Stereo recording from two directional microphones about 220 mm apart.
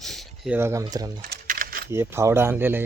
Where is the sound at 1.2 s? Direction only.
40° right (ahead or behind).